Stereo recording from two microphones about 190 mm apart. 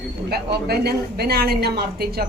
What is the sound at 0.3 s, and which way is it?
A woman's voice, 55° right (ahead or behind).